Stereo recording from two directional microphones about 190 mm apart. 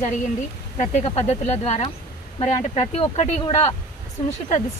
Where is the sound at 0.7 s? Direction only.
35° left (ahead or behind).